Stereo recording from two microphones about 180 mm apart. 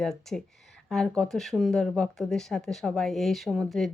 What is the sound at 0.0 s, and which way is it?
A woman's voice, centre (ahead or behind).